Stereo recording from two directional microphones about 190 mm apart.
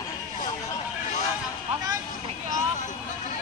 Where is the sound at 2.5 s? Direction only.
45° left (ahead or behind).